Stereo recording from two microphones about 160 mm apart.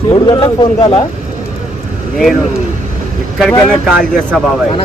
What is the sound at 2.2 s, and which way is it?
Speech, centre (ahead or behind).